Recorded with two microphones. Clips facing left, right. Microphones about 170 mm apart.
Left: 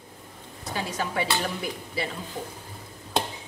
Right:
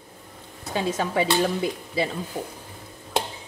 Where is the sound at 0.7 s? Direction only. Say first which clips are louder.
Right 5 dB; 25° right (ahead or behind).